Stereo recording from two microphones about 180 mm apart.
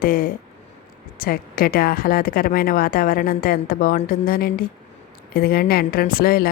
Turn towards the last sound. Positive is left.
turn(degrees=55)  # may be behind; listen again after turning